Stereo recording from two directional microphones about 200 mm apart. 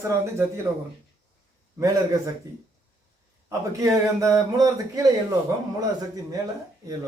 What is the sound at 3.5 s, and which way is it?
A man's voice, 15° right (ahead or behind).